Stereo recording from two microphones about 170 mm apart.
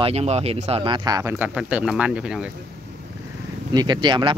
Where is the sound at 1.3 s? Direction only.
10° right (ahead or behind).